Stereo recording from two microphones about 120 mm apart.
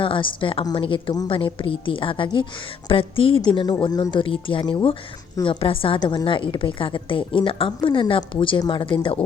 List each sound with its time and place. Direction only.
0.0 s a woman's voice: 45° left (ahead or behind)
3.4 s a woman's voice: 40° left (ahead or behind)